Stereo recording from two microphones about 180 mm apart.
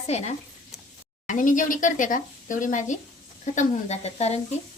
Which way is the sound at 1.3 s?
45° left (ahead or behind).